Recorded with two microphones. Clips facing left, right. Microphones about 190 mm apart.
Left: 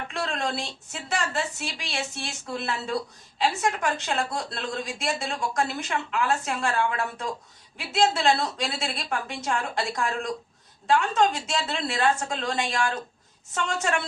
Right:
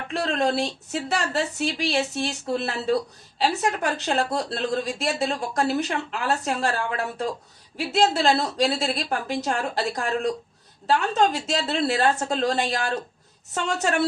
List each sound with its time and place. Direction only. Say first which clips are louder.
0.1 s a woman's voice: right 8 dB; 40° right (ahead or behind)